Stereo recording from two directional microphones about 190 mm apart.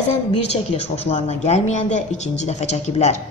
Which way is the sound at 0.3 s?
35° left (ahead or behind).